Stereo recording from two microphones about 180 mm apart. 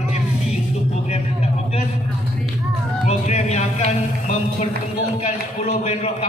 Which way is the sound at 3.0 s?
40° left (ahead or behind).